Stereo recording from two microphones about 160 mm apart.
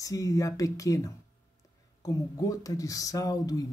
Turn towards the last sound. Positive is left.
turn(degrees=20)  # may be behind; listen again after turning